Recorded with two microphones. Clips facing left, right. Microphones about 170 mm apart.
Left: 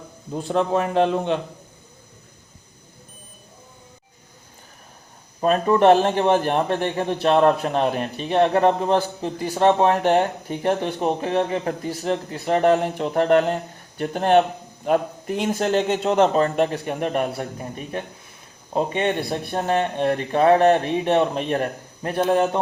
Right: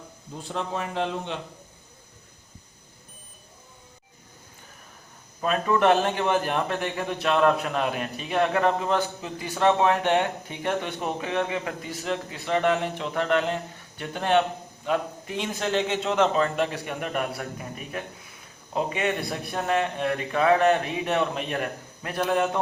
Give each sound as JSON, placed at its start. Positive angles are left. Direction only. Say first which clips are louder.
{"t": 0.4, "sound": "a man's voice", "louder": "left 9 dB", "side_deg": 60}
{"t": 5.4, "sound": "a man's voice", "louder": "left 5 dB", "side_deg": 35}